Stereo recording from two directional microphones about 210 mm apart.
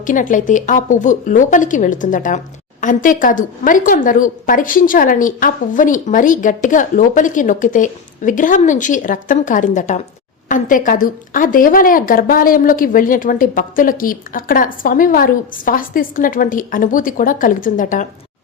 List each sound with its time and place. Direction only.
0.0 s a woman's voice: 40° left (ahead or behind)